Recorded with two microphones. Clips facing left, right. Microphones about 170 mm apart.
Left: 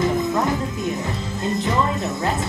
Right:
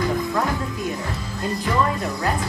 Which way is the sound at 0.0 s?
20° left (ahead or behind).